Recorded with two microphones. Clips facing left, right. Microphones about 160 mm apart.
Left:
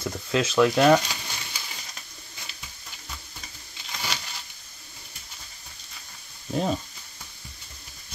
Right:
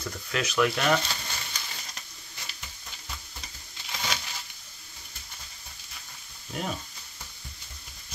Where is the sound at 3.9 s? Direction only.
Centre (ahead or behind).